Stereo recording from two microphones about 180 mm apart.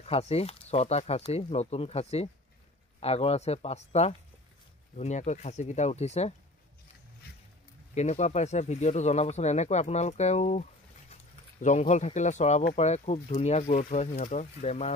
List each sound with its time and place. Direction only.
0.0 s speech: 35° left (ahead or behind)
7.9 s speech: 40° left (ahead or behind)